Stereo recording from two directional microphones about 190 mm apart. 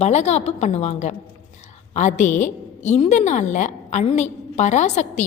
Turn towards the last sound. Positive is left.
turn(degrees=40)  # may be behind; listen again after turning